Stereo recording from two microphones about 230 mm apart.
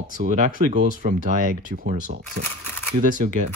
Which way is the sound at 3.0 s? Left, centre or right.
Right.